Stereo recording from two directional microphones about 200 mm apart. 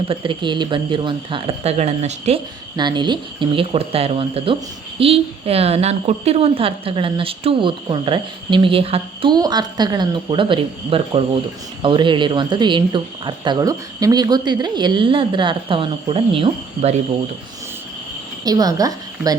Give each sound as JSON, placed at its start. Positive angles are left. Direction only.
{"t": 0.1, "sound": "a woman's voice", "side_deg": -25}
{"t": 2.7, "sound": "a woman's voice", "side_deg": -20}
{"t": 18.4, "sound": "a woman's voice", "side_deg": -20}